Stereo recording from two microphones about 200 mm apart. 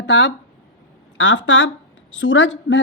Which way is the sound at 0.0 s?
65° left (ahead or behind).